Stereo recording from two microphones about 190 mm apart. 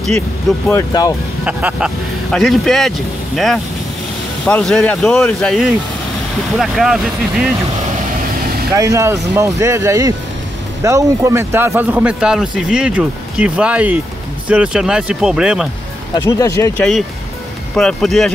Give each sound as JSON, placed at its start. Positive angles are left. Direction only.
{"t": 0.7, "sound": "speech", "side_deg": 15}
{"t": 1.4, "sound": "speech", "side_deg": -5}
{"t": 8.7, "sound": "speech", "side_deg": -15}
{"t": 16.3, "sound": "speech", "side_deg": 15}
{"t": 17.7, "sound": "speech", "side_deg": 0}